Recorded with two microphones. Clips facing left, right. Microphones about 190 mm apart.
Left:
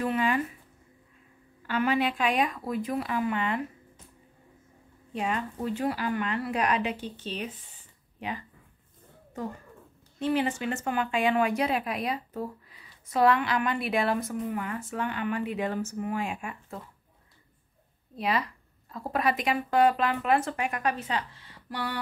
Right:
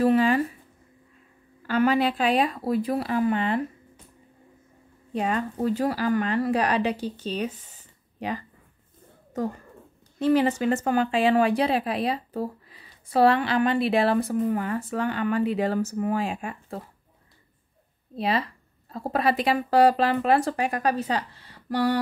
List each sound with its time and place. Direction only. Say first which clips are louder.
0.0 s speech: right 7 dB; 35° right (ahead or behind)
1.7 s speech: right 5 dB; 40° right (ahead or behind)
5.1 s speech: right 4 dB; 40° right (ahead or behind)
10.1 s speech: right 6 dB; 35° right (ahead or behind)
18.1 s speech: right 3 dB; 30° right (ahead or behind)